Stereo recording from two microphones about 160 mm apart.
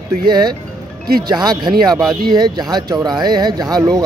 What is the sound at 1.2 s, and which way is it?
Speech, 25° right (ahead or behind).